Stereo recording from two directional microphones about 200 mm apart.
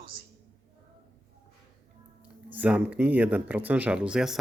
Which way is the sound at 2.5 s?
10° right (ahead or behind).